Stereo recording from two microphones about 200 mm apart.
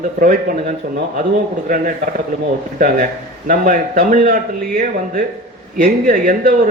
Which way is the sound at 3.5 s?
45° right (ahead or behind).